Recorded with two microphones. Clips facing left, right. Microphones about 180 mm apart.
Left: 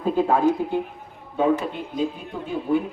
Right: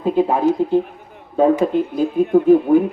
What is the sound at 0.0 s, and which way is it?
Speech, 15° right (ahead or behind).